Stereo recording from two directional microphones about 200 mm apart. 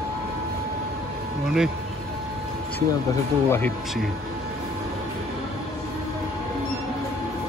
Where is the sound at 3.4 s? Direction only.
10° left (ahead or behind).